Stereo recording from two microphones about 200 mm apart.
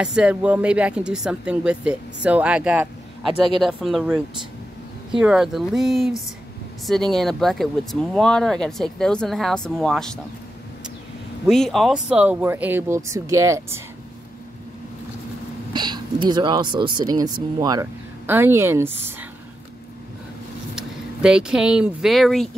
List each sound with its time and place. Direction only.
0.0 s speech: 5° right (ahead or behind)
11.4 s speech: centre (ahead or behind); by 13.7 s 15° right (ahead or behind)
15.7 s speech: 20° right (ahead or behind)
20.7 s speech: 5° right (ahead or behind)